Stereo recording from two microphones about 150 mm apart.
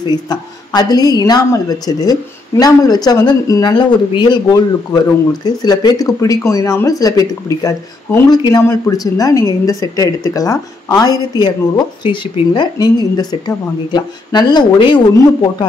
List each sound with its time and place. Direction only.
0.0 s speech: 25° left (ahead or behind)